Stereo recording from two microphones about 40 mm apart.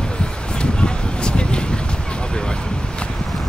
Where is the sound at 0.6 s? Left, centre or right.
Left.